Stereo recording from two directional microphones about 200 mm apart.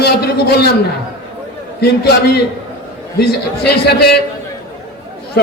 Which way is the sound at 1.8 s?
55° left (ahead or behind).